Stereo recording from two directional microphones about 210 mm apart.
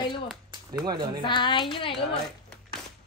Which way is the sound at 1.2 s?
20° left (ahead or behind).